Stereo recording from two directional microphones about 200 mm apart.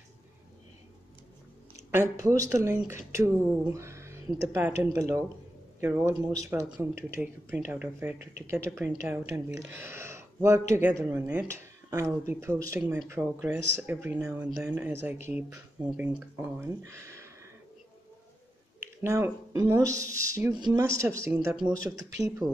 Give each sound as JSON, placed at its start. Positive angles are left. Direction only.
{"t": 1.9, "sound": "speech", "side_deg": -15}
{"t": 19.0, "sound": "speech", "side_deg": -15}